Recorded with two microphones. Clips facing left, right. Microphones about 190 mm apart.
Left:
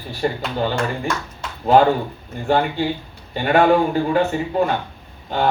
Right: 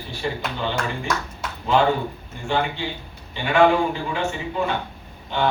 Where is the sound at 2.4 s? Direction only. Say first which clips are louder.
Left 6 dB; 45° left (ahead or behind).